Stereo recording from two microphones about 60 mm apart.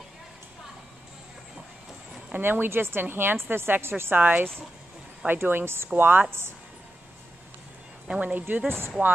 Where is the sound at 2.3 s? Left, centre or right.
Right.